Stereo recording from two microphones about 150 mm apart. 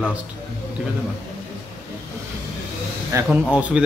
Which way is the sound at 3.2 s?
5° right (ahead or behind).